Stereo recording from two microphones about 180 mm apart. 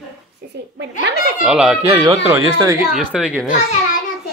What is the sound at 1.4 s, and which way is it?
Speech, 5° right (ahead or behind).